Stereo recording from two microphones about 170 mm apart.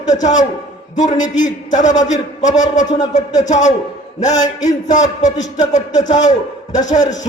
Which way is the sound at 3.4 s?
45° left (ahead or behind).